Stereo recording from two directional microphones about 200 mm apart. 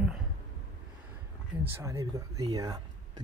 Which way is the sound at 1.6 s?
15° right (ahead or behind).